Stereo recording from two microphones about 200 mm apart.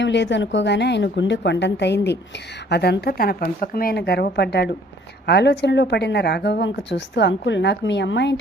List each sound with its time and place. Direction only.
0.0 s a woman's voice: 60° left (ahead or behind)